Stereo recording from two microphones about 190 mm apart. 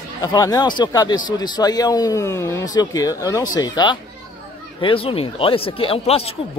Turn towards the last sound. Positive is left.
turn(degrees=30)  # may be behind; listen again after turning